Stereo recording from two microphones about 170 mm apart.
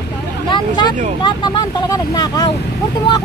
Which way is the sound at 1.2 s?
25° left (ahead or behind).